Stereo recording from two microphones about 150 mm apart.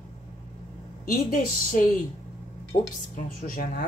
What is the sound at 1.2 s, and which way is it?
Speech, 70° left (ahead or behind).